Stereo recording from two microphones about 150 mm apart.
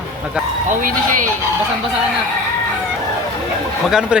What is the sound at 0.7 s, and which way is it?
Speech, 65° right (ahead or behind).